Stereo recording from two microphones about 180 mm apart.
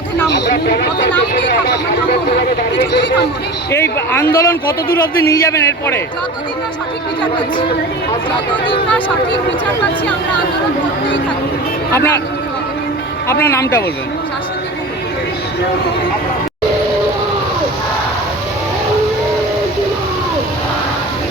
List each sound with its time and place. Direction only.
0.3 s speech: 70° left (ahead or behind)
3.7 s a man's voice: 15° left (ahead or behind)
11.9 s a man's voice: 15° left (ahead or behind)
13.2 s a man's voice: 15° left (ahead or behind)